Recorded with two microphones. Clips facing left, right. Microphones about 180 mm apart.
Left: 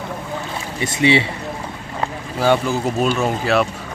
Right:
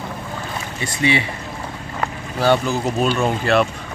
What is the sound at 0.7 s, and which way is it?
Speech, 20° left (ahead or behind).